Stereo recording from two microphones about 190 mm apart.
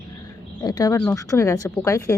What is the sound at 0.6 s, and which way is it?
Speech, 20° left (ahead or behind).